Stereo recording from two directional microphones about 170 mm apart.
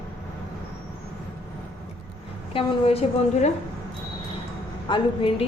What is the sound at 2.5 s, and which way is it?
Speech, 35° left (ahead or behind).